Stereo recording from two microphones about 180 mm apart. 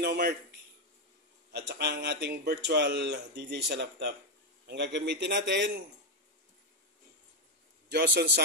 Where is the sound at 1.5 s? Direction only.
70° right (ahead or behind).